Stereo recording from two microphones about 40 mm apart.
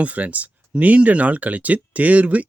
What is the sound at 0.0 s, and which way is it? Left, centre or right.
Speech, right.